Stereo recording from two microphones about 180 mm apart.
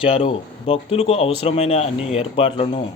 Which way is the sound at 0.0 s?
30° left (ahead or behind).